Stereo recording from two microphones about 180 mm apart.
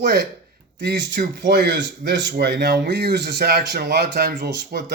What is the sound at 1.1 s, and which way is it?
Speech, 70° right (ahead or behind).